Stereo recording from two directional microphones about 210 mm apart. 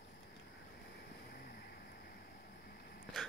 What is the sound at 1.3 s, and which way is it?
Vehicle, 45° left (ahead or behind).